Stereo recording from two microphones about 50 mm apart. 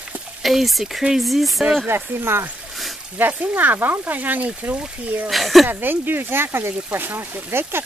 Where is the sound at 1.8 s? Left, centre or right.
Right.